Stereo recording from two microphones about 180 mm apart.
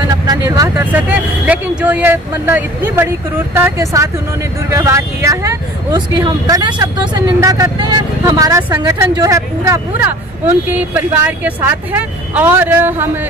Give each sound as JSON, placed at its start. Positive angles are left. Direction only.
{"t": 0.1, "sound": "speech", "side_deg": -20}